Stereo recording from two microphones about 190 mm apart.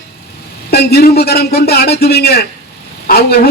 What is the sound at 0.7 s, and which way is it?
A man's voice, 55° left (ahead or behind).